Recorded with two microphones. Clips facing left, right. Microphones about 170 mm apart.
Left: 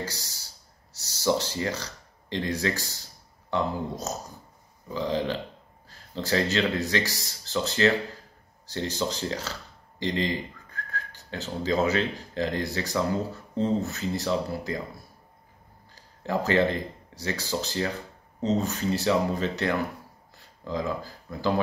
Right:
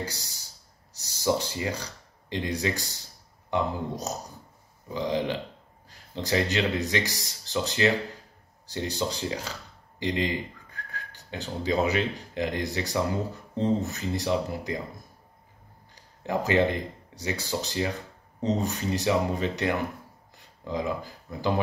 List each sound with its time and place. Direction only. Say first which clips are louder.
0.0 s speech: even; 15° right (ahead or behind)
4.8 s speech: even; 15° right (ahead or behind)
15.9 s speech: left 1 dB; 15° right (ahead or behind)